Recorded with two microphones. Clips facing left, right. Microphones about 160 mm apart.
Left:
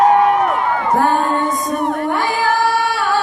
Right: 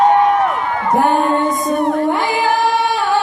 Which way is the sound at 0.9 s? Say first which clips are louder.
Right 3 dB; 20° right (ahead or behind).